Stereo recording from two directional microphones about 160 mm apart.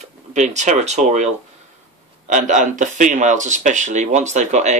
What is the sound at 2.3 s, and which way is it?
Speech, 55° right (ahead or behind).